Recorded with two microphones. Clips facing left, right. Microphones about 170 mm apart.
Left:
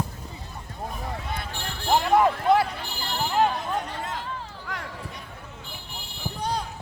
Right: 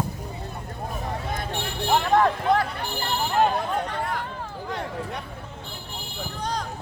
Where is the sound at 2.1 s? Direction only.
10° left (ahead or behind).